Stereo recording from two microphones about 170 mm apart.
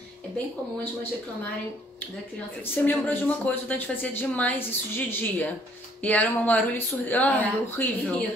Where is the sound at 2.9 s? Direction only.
10° left (ahead or behind).